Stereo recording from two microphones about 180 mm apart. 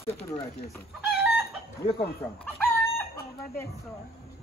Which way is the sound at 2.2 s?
15° left (ahead or behind).